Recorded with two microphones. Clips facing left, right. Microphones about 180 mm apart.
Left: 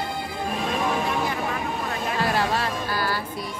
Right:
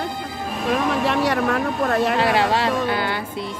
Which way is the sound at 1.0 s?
75° right (ahead or behind).